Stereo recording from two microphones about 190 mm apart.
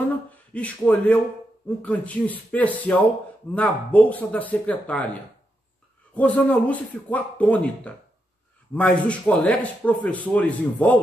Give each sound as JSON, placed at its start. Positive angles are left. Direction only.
{"t": 0.5, "sound": "speech", "side_deg": 5}
{"t": 6.1, "sound": "speech", "side_deg": 10}